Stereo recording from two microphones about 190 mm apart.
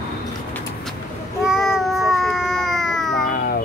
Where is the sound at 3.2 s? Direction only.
50° left (ahead or behind).